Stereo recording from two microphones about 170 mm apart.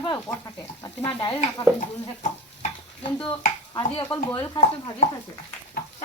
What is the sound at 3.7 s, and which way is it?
Speech, 30° left (ahead or behind).